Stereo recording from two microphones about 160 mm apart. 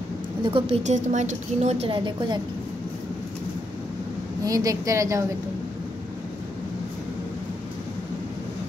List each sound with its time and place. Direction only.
0.4 s a woman's voice: 35° right (ahead or behind)
0.8 s a woman's voice: 50° right (ahead or behind)
1.9 s a woman's voice: 30° right (ahead or behind)
4.4 s a woman's voice: 20° right (ahead or behind)